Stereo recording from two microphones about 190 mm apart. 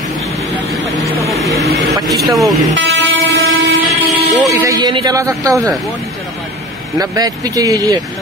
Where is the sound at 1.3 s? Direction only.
15° left (ahead or behind).